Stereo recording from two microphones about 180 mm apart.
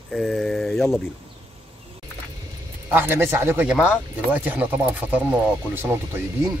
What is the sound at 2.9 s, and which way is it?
Speech, 10° right (ahead or behind).